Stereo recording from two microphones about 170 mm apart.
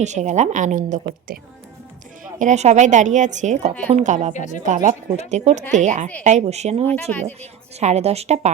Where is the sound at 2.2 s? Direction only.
45° right (ahead or behind).